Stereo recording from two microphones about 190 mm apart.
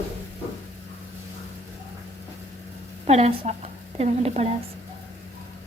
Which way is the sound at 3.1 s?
35° right (ahead or behind).